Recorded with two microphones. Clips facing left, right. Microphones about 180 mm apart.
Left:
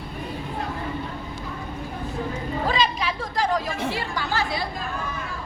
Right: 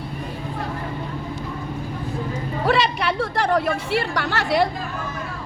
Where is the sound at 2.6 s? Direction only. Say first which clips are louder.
Right 5 dB; 70° right (ahead or behind).